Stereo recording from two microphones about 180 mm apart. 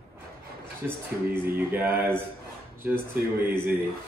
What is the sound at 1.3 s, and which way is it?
A man's voice, 10° right (ahead or behind).